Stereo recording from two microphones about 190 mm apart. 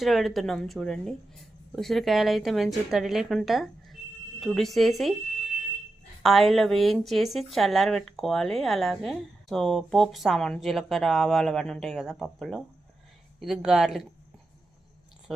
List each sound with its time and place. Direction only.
0.0 s speech: centre (ahead or behind)
6.2 s speech: centre (ahead or behind)